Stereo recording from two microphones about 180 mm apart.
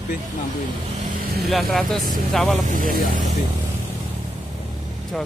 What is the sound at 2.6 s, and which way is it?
Speech, 45° right (ahead or behind).